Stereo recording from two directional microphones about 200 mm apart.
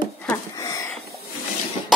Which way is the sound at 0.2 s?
10° left (ahead or behind).